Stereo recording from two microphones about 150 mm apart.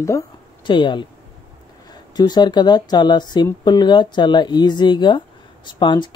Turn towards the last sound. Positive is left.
turn(degrees=30)  # may be behind; listen again after turning